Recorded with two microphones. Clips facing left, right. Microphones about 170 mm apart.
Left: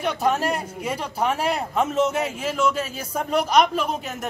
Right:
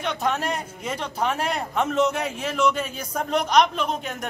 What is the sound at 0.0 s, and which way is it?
Speech, 5° left (ahead or behind).